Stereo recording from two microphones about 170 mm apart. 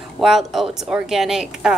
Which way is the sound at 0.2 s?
Centre (ahead or behind).